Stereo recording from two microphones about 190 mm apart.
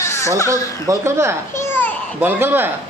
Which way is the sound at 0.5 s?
15° right (ahead or behind).